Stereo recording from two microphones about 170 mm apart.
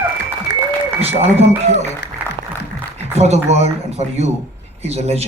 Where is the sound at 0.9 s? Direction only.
35° right (ahead or behind).